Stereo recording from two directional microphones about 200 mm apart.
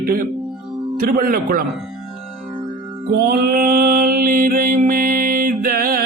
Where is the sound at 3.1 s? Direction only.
50° right (ahead or behind).